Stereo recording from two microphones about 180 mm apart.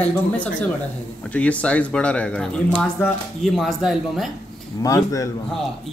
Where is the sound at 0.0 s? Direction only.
10° left (ahead or behind).